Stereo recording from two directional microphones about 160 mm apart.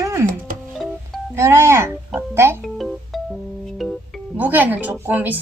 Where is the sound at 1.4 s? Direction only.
15° right (ahead or behind).